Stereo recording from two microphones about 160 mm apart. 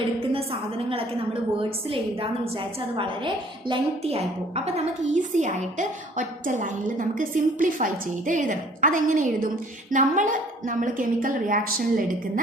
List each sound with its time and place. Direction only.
0.9 s a woman's voice: 35° right (ahead or behind)
5.4 s a woman's voice: 50° right (ahead or behind)